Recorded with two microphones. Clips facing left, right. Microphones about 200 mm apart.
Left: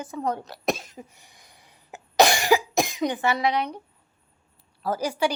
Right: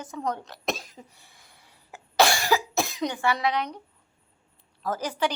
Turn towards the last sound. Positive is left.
turn(degrees=10)  # may be behind; listen again after turning